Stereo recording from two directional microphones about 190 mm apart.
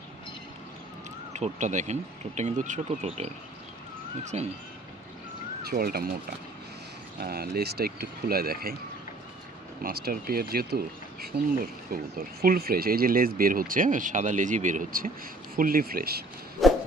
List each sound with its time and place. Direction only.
1.3 s speech: 40° right (ahead or behind)
4.2 s speech: 40° right (ahead or behind)
5.6 s speech: 55° right (ahead or behind)
7.2 s speech: 55° right (ahead or behind)
9.8 s speech: 55° right (ahead or behind)
16.6 s a sound: centre (ahead or behind)